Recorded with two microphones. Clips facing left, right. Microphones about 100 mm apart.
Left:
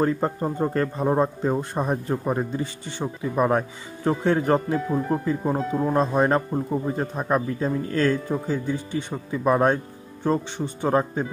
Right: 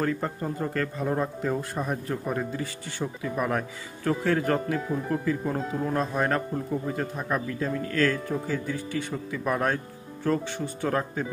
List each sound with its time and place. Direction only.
0.0 s speech: 30° left (ahead or behind)